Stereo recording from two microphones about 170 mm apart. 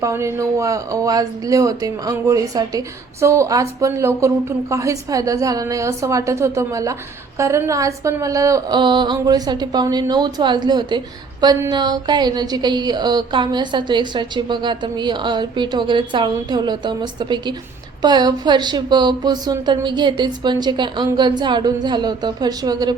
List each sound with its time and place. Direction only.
0.0 s a woman's voice: 15° right (ahead or behind)